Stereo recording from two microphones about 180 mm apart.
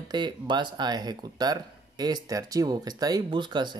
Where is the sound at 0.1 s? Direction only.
25° right (ahead or behind).